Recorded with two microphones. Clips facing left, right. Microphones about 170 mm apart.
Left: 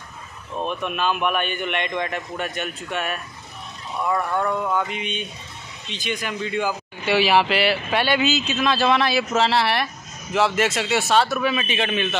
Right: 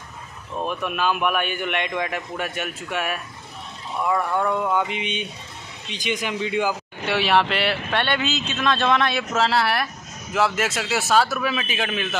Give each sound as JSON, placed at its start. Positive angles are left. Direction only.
{"t": 0.6, "sound": "a man's voice", "side_deg": -5}
{"t": 7.1, "sound": "speech", "side_deg": 0}